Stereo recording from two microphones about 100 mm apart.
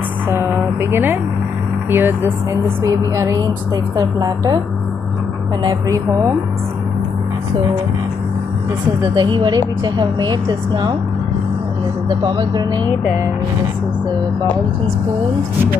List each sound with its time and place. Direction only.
0.3 s a sound: 25° right (ahead or behind)
1.9 s speech: 20° right (ahead or behind)
2.8 s music: 35° right (ahead or behind)
3.9 s a woman's voice: 45° right (ahead or behind)
5.9 s music: 35° right (ahead or behind)
9.0 s a woman's voice: 45° right (ahead or behind)
12.3 s a woman's voice: 45° right (ahead or behind)